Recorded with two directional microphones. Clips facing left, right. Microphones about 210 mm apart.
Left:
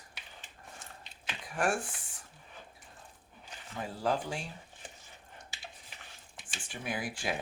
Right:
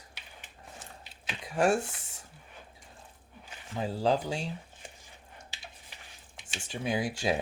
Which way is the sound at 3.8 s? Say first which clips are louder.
Right 5 dB; 25° right (ahead or behind).